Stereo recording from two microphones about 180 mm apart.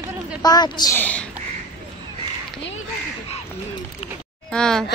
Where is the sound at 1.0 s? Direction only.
10° left (ahead or behind).